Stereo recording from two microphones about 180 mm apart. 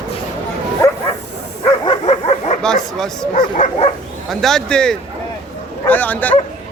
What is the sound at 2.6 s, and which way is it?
Speech, 5° left (ahead or behind).